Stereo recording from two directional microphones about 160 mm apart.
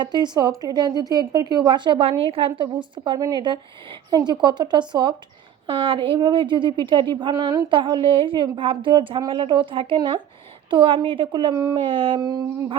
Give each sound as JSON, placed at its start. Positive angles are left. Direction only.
{"t": 0.0, "sound": "a woman's voice", "side_deg": -25}
{"t": 11.9, "sound": "a woman's voice", "side_deg": -35}